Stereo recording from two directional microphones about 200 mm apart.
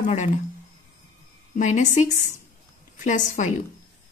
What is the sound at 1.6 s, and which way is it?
Speech, 35° left (ahead or behind).